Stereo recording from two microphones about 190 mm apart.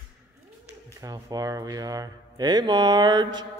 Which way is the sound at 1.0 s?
15° right (ahead or behind).